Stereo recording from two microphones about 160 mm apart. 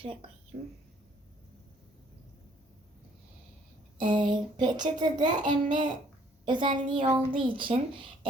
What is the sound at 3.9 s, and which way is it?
A child's voice, 30° right (ahead or behind).